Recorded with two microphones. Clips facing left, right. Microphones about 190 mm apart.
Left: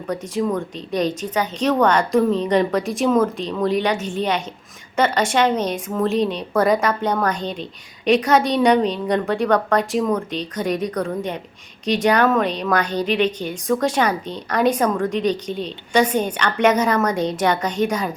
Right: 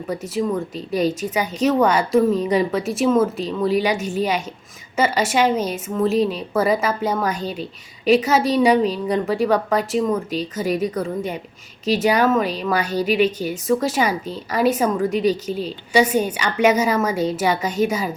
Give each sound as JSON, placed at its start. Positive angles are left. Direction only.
{"t": 0.1, "sound": "a woman's voice", "side_deg": -5}